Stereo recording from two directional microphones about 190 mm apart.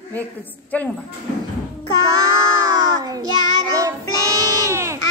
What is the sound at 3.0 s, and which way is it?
Child singing, 20° right (ahead or behind).